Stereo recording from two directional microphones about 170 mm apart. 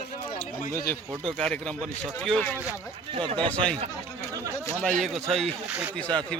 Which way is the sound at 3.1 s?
30° right (ahead or behind).